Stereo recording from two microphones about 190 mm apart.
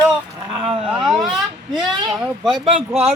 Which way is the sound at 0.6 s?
30° right (ahead or behind).